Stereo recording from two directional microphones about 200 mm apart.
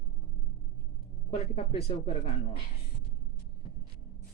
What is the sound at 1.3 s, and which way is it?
Speech, 30° left (ahead or behind).